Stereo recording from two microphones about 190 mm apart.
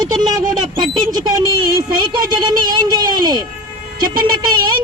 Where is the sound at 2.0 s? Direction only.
20° right (ahead or behind).